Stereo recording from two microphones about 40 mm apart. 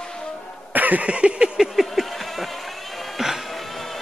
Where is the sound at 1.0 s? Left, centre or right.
Right.